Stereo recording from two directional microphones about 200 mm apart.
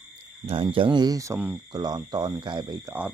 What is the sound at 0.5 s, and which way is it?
Speech, 25° right (ahead or behind).